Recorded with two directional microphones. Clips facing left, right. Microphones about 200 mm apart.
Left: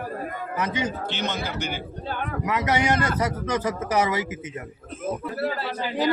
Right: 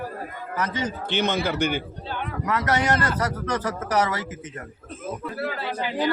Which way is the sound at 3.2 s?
10° left (ahead or behind).